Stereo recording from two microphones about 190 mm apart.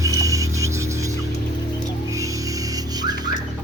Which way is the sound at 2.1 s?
15° right (ahead or behind).